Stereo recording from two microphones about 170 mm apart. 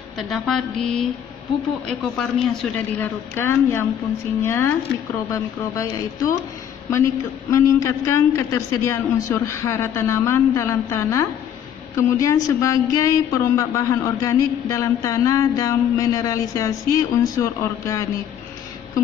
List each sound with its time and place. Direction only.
0.3 s speech: centre (ahead or behind)
3.3 s a woman's voice: 15° left (ahead or behind)
7.5 s a woman's voice: 20° left (ahead or behind)